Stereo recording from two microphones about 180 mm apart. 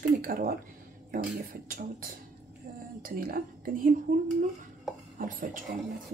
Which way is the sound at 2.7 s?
55° right (ahead or behind).